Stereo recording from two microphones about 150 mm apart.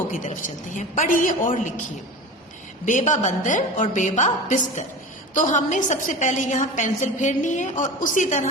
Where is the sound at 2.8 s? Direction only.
55° left (ahead or behind).